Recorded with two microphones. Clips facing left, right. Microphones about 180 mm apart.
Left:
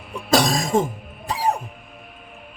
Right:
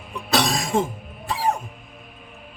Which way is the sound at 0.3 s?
45° left (ahead or behind).